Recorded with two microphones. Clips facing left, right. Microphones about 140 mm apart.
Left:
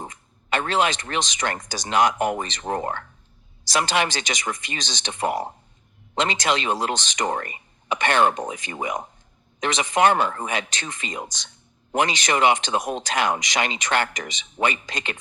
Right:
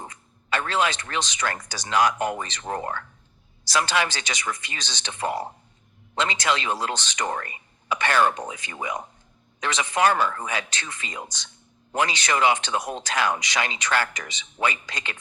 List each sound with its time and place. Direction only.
0.5 s speech: 20° left (ahead or behind)